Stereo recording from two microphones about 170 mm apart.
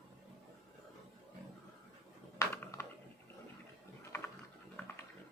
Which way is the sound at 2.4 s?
15° left (ahead or behind).